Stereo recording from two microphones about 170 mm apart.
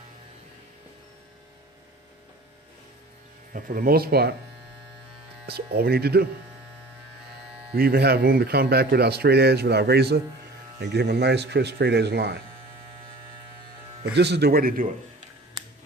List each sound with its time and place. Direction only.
3.5 s speech: 60° right (ahead or behind)
5.5 s speech: 65° right (ahead or behind)
7.7 s speech: 65° right (ahead or behind)
14.2 s speech: 75° right (ahead or behind); by 14.8 s 60° right (ahead or behind)